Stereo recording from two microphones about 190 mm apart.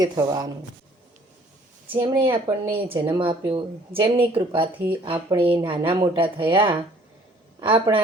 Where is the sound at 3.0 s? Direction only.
25° right (ahead or behind).